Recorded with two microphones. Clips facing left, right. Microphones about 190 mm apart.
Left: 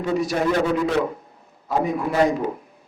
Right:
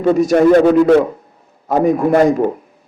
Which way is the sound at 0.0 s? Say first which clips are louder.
Right 11 dB; 45° right (ahead or behind).